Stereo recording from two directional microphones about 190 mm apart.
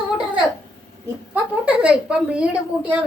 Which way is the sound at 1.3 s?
5° right (ahead or behind).